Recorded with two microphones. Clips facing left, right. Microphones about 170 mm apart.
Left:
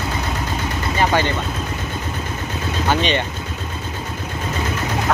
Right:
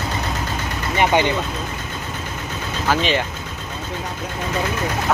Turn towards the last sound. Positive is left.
turn(degrees=0)  # may be behind; listen again after turning